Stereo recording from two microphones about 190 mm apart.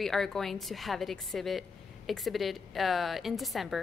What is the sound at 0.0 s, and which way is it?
A woman's voice, centre (ahead or behind).